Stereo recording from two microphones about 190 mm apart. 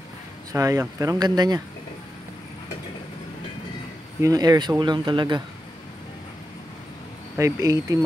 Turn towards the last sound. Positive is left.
turn(degrees=-15)  # may be behind; listen again after turning